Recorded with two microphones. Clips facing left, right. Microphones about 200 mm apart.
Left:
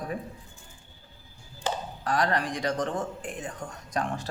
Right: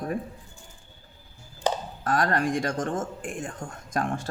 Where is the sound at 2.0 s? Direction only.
50° right (ahead or behind).